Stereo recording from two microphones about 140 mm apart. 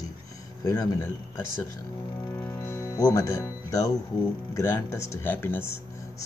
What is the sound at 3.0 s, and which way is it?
Speech, 25° left (ahead or behind).